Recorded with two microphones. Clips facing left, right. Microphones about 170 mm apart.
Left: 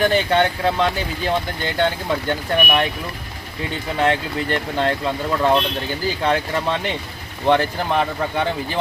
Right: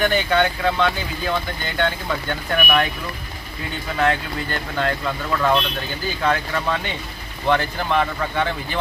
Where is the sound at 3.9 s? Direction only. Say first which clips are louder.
Left 1 dB; 30° left (ahead or behind).